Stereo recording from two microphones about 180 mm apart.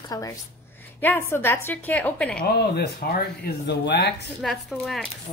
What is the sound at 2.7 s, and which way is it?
Speech, 60° left (ahead or behind).